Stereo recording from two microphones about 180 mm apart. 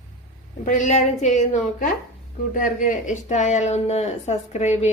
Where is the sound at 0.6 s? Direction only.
45° left (ahead or behind).